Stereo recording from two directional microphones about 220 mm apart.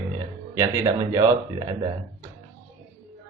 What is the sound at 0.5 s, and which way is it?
Speech, 15° right (ahead or behind).